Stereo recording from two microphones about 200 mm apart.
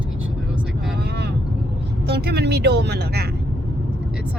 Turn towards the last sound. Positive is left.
turn(degrees=-55)  # may be behind; listen again after turning